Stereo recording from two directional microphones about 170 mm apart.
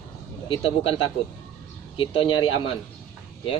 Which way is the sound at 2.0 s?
30° left (ahead or behind).